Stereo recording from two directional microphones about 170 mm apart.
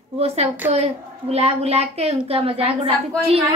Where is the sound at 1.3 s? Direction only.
40° right (ahead or behind).